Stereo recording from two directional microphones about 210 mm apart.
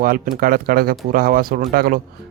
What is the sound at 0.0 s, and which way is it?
Speech, 45° right (ahead or behind).